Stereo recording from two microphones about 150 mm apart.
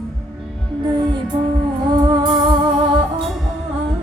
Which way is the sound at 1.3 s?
30° right (ahead or behind).